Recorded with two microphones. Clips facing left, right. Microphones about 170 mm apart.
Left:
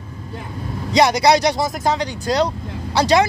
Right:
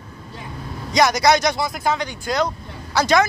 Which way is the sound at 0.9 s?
30° left (ahead or behind).